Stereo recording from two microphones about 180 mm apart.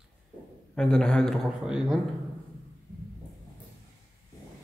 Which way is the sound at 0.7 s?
5° left (ahead or behind).